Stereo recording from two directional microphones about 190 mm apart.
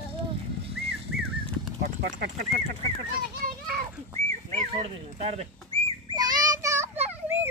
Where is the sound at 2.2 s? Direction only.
40° right (ahead or behind).